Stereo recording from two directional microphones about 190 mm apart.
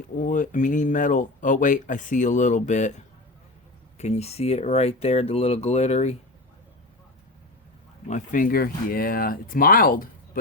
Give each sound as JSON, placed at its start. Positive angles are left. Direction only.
{"t": 0.2, "sound": "speech", "side_deg": 40}
{"t": 3.9, "sound": "speech", "side_deg": 35}
{"t": 8.0, "sound": "speech", "side_deg": 40}